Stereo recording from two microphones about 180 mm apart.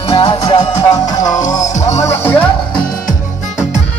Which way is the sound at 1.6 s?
40° left (ahead or behind).